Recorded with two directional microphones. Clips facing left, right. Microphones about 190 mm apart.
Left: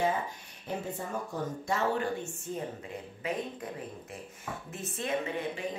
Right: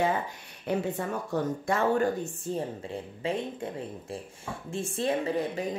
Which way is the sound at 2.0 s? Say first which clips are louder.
Right 6 dB; 35° right (ahead or behind).